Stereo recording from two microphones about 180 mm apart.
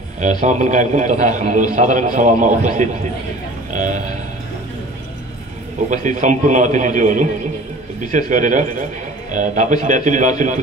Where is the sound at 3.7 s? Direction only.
45° right (ahead or behind).